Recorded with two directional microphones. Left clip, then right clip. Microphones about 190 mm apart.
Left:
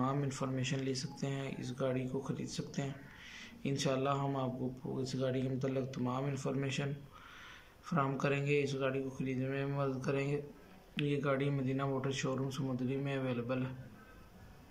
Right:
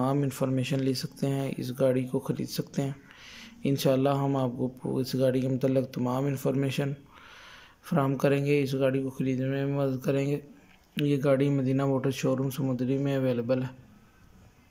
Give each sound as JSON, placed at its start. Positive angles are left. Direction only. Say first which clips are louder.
{"t": 0.0, "sound": "speech", "louder": "right 9 dB", "side_deg": -25}